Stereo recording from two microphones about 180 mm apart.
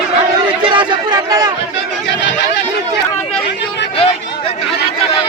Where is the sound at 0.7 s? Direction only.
25° right (ahead or behind).